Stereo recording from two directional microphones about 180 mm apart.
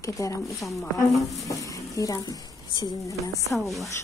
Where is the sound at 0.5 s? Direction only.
Centre (ahead or behind).